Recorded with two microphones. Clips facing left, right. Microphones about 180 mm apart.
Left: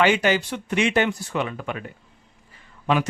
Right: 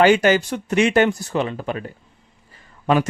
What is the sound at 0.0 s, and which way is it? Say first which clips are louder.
Speech: right 5 dB; 45° right (ahead or behind).